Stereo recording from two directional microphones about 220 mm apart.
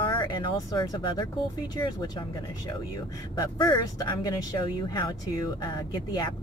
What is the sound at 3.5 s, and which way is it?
Speech, 20° left (ahead or behind).